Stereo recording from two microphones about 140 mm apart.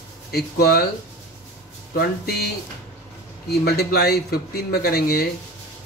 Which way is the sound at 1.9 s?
90° left.